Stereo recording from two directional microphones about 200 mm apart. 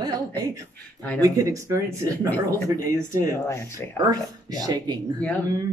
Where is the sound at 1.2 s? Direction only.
15° right (ahead or behind).